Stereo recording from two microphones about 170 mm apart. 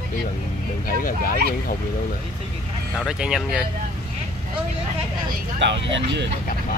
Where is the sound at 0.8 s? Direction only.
55° left (ahead or behind).